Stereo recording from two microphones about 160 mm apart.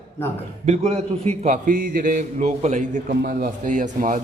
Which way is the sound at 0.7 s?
45° right (ahead or behind).